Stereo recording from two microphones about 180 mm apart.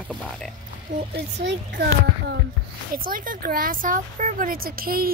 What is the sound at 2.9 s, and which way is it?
Speech, 50° right (ahead or behind).